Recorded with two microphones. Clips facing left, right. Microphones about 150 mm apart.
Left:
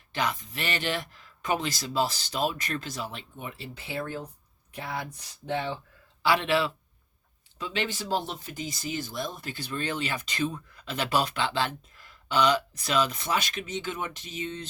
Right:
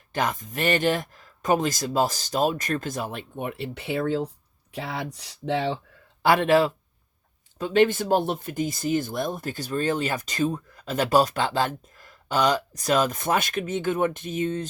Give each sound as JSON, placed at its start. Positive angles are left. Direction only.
{"t": 0.1, "sound": "speech", "side_deg": -45}
{"t": 6.2, "sound": "speech", "side_deg": -50}